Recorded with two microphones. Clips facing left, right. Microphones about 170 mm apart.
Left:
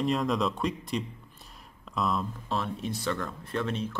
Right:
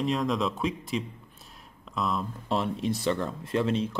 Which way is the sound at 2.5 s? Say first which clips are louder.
Right 5 dB; 25° right (ahead or behind).